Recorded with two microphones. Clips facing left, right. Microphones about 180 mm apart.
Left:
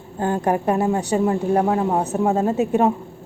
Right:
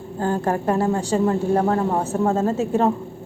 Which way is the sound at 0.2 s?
15° left (ahead or behind).